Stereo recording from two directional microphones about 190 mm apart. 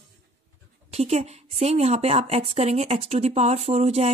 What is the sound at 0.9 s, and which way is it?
A woman's voice, 35° right (ahead or behind).